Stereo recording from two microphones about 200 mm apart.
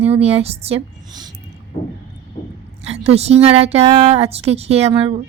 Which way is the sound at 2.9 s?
30° right (ahead or behind).